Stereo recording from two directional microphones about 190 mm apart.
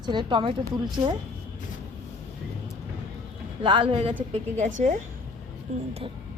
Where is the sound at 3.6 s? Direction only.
25° right (ahead or behind).